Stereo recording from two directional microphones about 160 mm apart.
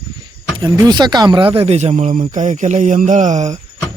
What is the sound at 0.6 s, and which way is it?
Speech, 25° right (ahead or behind).